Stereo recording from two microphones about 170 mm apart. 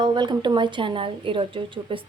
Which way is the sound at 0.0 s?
25° right (ahead or behind).